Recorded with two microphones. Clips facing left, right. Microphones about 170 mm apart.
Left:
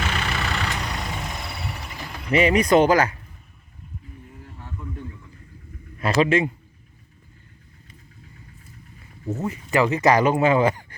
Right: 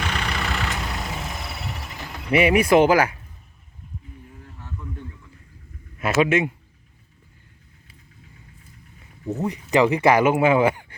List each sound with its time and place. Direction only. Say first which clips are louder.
0.0 s vehicle: even; centre (ahead or behind)
2.0 s speech: right 1 dB; 5° right (ahead or behind)
6.0 s a man's voice: even; 5° right (ahead or behind)
9.2 s speech: right 2 dB; 15° right (ahead or behind)